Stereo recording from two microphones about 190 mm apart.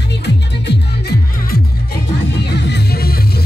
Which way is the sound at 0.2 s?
60° left (ahead or behind).